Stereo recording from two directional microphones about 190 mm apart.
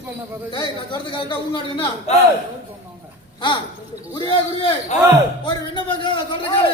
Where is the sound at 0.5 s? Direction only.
25° left (ahead or behind).